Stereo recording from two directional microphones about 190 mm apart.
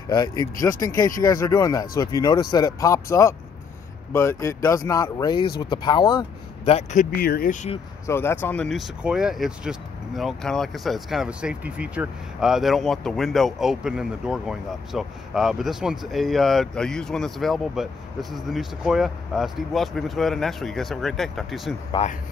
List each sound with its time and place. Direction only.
0.1 s speech: 20° left (ahead or behind)
6.6 s speech: 35° left (ahead or behind); by 7.5 s 50° left (ahead or behind)
8.1 s speech: 10° left (ahead or behind)
22.0 s speech: 30° left (ahead or behind)